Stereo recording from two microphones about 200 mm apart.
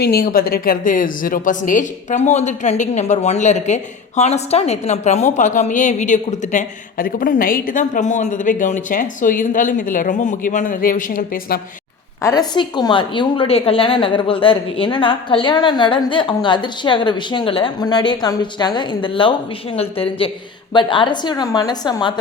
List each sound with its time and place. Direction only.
0.0 s a woman's voice: 50° left (ahead or behind)
12.2 s a woman's voice: 20° left (ahead or behind)